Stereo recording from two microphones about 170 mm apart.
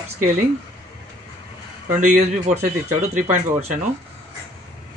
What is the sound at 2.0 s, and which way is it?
Speech, 45° right (ahead or behind).